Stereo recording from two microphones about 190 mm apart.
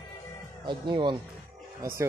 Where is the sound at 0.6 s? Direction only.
25° right (ahead or behind).